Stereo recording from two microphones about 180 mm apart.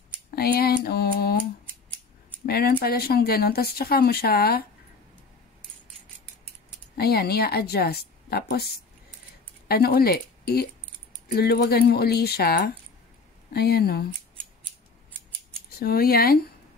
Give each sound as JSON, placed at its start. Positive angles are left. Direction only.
{"t": 0.3, "sound": "a sound", "side_deg": 60}
{"t": 2.4, "sound": "speech", "side_deg": 60}
{"t": 7.0, "sound": "speech", "side_deg": 60}
{"t": 9.7, "sound": "speech", "side_deg": 60}
{"t": 15.7, "sound": "speech", "side_deg": 55}